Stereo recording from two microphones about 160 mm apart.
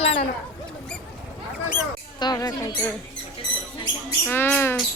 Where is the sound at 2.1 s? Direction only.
25° left (ahead or behind).